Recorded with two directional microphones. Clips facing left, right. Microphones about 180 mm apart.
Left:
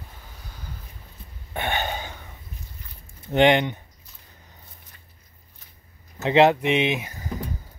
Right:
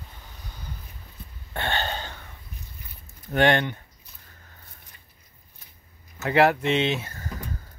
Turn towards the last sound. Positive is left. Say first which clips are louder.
# left 1 dB
turn(degrees=15)  # may be behind; listen again after turning